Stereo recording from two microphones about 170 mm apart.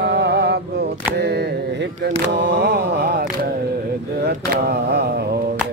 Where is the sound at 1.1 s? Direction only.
75° right (ahead or behind).